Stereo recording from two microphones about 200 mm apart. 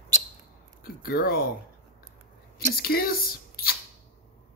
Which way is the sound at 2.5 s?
50° left (ahead or behind).